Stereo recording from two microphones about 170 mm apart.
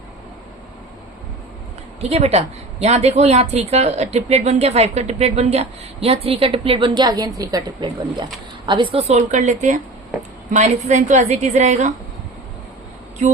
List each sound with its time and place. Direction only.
2.0 s a woman's voice: 40° right (ahead or behind)